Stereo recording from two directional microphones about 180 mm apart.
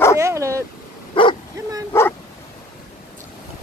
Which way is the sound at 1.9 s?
15° left (ahead or behind).